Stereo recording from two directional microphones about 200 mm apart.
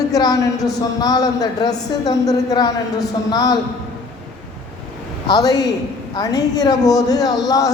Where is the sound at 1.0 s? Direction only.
20° left (ahead or behind).